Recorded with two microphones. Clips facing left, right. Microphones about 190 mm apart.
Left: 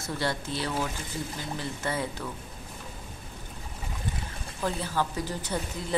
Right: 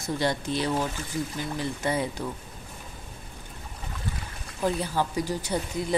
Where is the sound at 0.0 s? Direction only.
15° right (ahead or behind).